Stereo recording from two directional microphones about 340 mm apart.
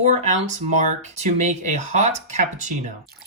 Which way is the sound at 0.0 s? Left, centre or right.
Centre.